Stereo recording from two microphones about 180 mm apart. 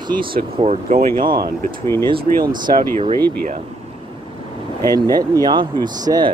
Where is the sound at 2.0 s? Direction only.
25° right (ahead or behind).